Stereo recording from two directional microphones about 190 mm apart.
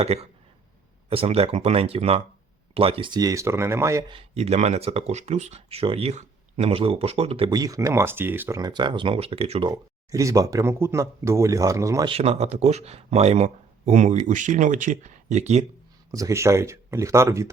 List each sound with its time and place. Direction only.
0.0 s speech: 35° right (ahead or behind); by 4.0 s 15° right (ahead or behind)
4.1 s speech: 30° right (ahead or behind); by 12.0 s 15° right (ahead or behind)
12.0 s speech: 30° right (ahead or behind)
16.1 s speech: 15° right (ahead or behind)